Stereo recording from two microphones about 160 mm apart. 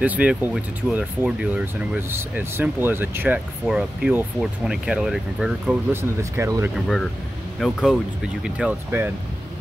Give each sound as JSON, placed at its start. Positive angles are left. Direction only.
{"t": 0.0, "sound": "speech", "side_deg": -10}
{"t": 6.3, "sound": "speech", "side_deg": -15}
{"t": 6.7, "sound": "speech", "side_deg": 0}
{"t": 8.5, "sound": "speech", "side_deg": -10}